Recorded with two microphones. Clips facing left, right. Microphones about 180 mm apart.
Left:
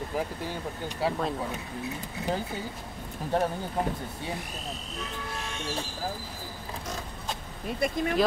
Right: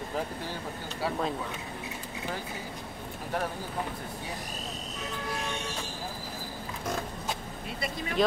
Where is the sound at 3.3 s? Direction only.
25° left (ahead or behind).